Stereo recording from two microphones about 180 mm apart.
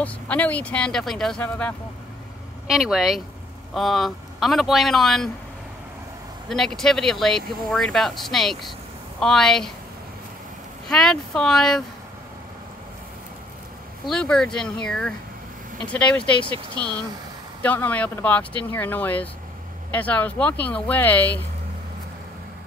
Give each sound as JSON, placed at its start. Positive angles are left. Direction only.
{"t": 0.0, "sound": "speech", "side_deg": 10}
{"t": 2.7, "sound": "speech", "side_deg": 0}
{"t": 6.5, "sound": "speech", "side_deg": 0}
{"t": 10.9, "sound": "speech", "side_deg": 5}
{"t": 14.0, "sound": "speech", "side_deg": 5}
{"t": 16.8, "sound": "speech", "side_deg": -25}
{"t": 17.6, "sound": "speech", "side_deg": 10}